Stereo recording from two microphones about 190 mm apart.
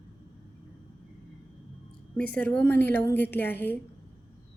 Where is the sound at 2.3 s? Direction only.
5° left (ahead or behind).